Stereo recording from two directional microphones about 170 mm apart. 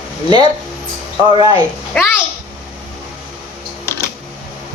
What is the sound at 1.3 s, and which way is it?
Speech, 25° right (ahead or behind).